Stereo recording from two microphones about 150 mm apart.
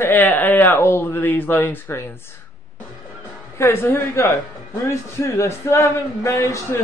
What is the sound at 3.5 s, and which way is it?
A man's voice, 15° left (ahead or behind).